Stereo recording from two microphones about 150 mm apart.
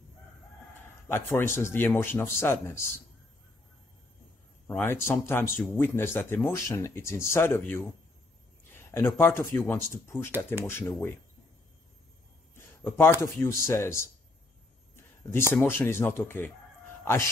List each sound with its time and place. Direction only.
1.0 s speech: 15° left (ahead or behind)
4.6 s speech: 15° left (ahead or behind)
8.9 s speech: 15° left (ahead or behind)
12.5 s speech: 15° left (ahead or behind)
15.5 s speech: 15° left (ahead or behind)